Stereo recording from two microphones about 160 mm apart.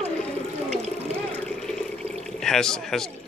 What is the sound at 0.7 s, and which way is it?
Water, 40° right (ahead or behind).